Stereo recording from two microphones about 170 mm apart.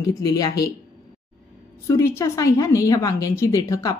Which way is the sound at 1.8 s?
15° left (ahead or behind).